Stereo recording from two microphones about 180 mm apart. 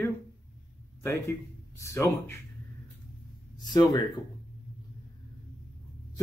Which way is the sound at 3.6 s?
20° left (ahead or behind).